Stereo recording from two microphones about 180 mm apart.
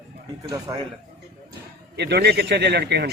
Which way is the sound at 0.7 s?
20° right (ahead or behind).